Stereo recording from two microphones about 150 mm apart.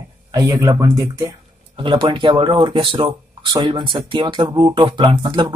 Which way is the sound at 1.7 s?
30° right (ahead or behind).